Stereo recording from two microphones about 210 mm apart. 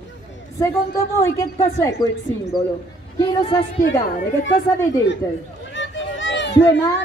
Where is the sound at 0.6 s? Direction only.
15° left (ahead or behind).